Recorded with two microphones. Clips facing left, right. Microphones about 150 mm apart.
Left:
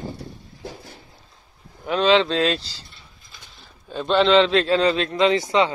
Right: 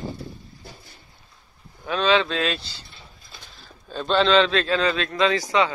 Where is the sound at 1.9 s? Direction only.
25° left (ahead or behind).